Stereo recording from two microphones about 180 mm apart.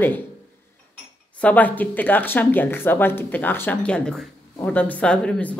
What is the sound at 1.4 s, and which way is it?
Speech, 10° left (ahead or behind).